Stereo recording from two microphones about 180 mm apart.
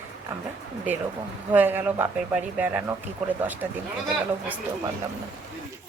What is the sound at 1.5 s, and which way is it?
Speech, 10° right (ahead or behind).